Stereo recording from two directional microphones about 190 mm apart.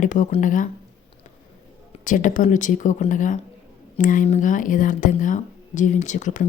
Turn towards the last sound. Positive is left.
turn(degrees=40)  # may be behind; listen again after turning